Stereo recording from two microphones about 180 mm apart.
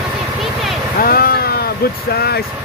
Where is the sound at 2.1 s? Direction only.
60° left (ahead or behind).